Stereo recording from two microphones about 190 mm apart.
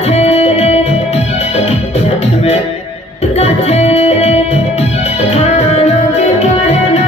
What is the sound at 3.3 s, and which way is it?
Music, 35° left (ahead or behind).